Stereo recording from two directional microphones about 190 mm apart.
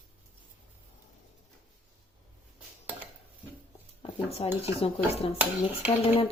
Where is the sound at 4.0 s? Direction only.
30° left (ahead or behind).